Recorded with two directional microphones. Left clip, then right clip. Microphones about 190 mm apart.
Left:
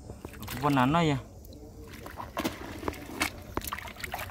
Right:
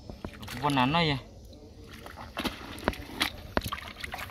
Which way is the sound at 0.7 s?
5° left (ahead or behind).